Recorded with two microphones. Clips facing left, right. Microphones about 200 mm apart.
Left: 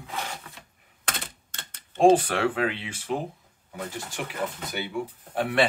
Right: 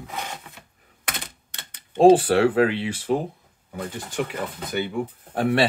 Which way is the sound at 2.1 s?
30° right (ahead or behind).